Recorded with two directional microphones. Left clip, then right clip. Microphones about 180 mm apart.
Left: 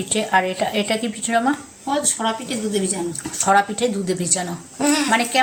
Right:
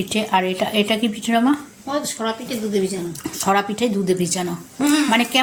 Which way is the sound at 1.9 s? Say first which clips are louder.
Left 2 dB; 75° left (ahead or behind).